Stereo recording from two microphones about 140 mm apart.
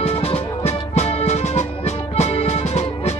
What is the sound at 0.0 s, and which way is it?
Music, 45° left (ahead or behind).